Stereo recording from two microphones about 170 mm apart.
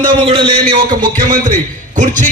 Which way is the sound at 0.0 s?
30° right (ahead or behind).